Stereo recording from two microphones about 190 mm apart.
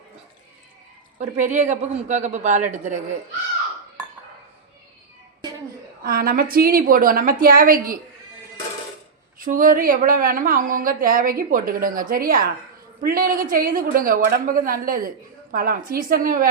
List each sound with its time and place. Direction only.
1.2 s speech: 40° right (ahead or behind)
6.0 s a woman's voice: 50° right (ahead or behind)
9.4 s a woman's voice: 45° right (ahead or behind)